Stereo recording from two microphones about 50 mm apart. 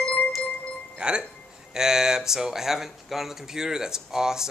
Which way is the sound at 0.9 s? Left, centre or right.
Centre.